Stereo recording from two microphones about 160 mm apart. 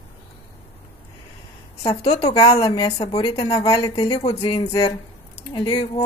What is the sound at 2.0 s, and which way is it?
Music, 40° left (ahead or behind).